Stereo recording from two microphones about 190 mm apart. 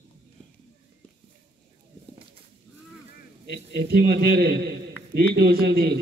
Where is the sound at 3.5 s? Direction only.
55° right (ahead or behind).